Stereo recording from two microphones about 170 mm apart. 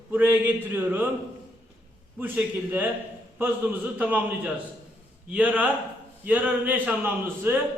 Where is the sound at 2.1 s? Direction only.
10° right (ahead or behind).